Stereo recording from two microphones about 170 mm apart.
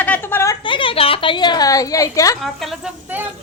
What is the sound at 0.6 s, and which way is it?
A woman's voice, 30° left (ahead or behind).